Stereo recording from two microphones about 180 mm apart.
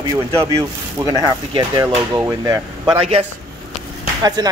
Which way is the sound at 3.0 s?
35° right (ahead or behind).